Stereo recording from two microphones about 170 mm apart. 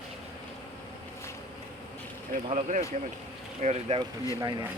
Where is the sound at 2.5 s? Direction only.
45° right (ahead or behind).